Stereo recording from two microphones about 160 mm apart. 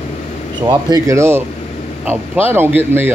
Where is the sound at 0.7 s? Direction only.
20° right (ahead or behind).